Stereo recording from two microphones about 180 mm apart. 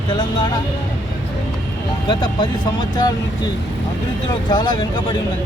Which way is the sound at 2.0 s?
25° left (ahead or behind).